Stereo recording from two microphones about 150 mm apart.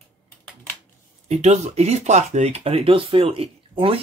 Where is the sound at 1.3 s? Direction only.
50° right (ahead or behind).